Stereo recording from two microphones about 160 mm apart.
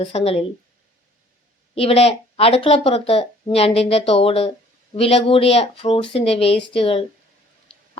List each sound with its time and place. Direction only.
0.0 s speech: 40° left (ahead or behind)
1.7 s speech: 40° left (ahead or behind)